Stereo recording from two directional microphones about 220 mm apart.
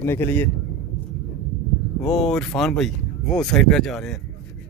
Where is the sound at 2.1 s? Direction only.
Centre (ahead or behind).